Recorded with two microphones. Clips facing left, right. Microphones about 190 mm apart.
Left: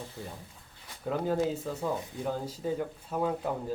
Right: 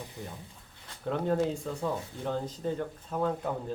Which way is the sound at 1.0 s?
5° left (ahead or behind).